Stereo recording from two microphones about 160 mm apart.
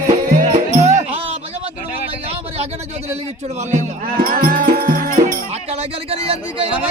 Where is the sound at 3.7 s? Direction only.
60° right (ahead or behind).